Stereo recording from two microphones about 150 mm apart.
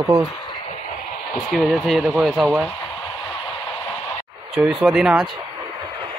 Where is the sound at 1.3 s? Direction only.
Centre (ahead or behind).